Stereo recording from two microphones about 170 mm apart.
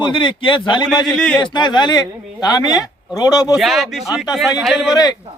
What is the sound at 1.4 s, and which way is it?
Speech, 25° left (ahead or behind).